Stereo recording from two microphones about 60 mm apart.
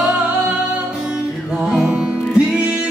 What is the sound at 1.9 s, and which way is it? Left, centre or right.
Music, right.